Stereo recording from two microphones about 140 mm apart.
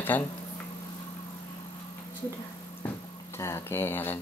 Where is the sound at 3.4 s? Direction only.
20° left (ahead or behind).